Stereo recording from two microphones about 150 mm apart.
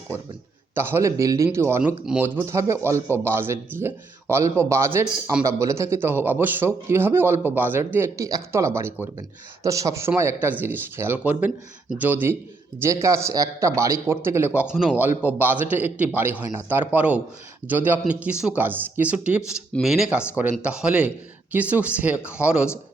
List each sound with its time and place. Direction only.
0.7 s a man's voice: 15° right (ahead or behind)